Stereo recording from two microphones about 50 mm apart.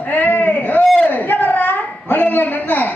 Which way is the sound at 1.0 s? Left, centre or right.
Left.